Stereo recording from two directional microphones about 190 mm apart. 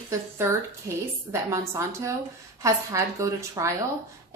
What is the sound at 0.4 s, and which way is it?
A woman's voice, 15° right (ahead or behind).